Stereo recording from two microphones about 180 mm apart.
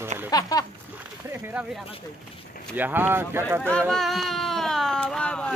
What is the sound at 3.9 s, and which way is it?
Speech, centre (ahead or behind).